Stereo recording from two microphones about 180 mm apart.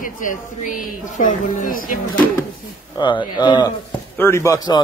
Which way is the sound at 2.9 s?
25° left (ahead or behind).